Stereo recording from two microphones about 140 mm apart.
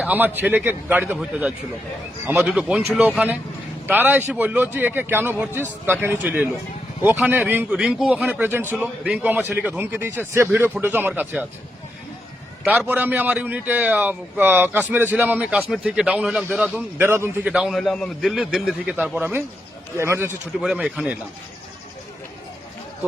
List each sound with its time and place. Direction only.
0.0 s a man's voice: 15° right (ahead or behind)
12.9 s a man's voice: 10° right (ahead or behind)
17.5 s a man's voice: 5° right (ahead or behind)
20.6 s a man's voice: 5° right (ahead or behind)